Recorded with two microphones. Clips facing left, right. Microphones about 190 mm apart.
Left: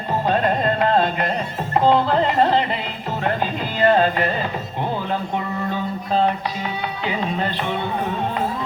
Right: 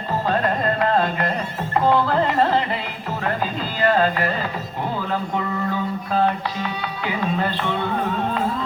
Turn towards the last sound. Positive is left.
turn(degrees=20)  # may be behind; listen again after turning